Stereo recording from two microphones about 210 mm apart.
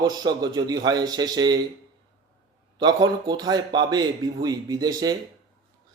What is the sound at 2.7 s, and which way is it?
Speech, 20° right (ahead or behind).